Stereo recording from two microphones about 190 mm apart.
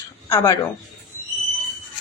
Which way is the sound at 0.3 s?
15° left (ahead or behind).